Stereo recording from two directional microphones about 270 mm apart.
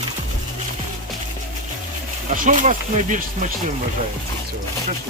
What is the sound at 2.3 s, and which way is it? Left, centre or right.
Speech, right.